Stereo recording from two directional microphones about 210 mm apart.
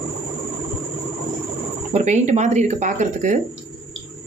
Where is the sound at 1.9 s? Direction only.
35° right (ahead or behind).